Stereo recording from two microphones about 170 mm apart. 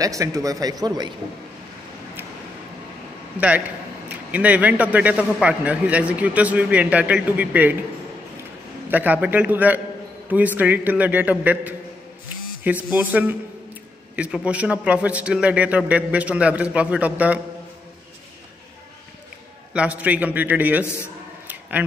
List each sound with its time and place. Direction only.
0.0 s speech: 20° right (ahead or behind)
3.3 s a man's voice: 10° right (ahead or behind)
8.9 s a man's voice: 10° right (ahead or behind)
19.7 s a man's voice: 10° right (ahead or behind)
21.5 s a sound: 10° right (ahead or behind)